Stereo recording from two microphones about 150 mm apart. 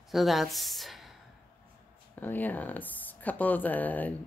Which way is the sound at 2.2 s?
10° left (ahead or behind).